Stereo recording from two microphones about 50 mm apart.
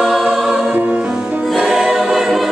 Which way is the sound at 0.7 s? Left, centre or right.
Right.